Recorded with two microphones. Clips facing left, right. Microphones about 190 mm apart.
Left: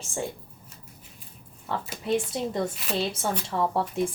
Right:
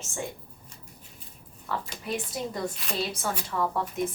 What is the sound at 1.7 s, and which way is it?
Speech, 25° left (ahead or behind).